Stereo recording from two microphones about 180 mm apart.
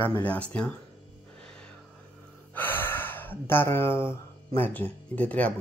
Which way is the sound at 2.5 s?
10° left (ahead or behind).